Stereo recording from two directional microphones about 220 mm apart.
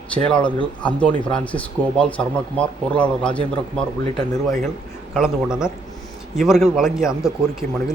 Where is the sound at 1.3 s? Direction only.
5° left (ahead or behind).